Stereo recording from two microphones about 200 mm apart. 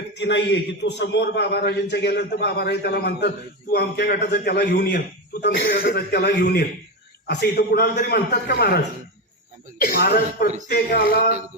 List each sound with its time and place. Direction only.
0.2 s a man's voice: 60° left (ahead or behind)
9.8 s a man's voice: 50° left (ahead or behind)